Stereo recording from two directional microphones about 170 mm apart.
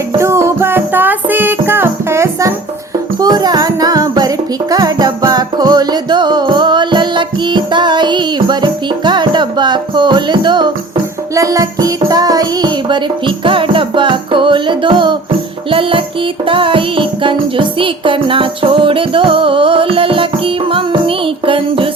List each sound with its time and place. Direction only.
0.1 s music: 15° right (ahead or behind)